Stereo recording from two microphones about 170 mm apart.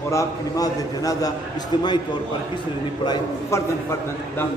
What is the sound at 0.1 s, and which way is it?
A man's voice, 20° left (ahead or behind).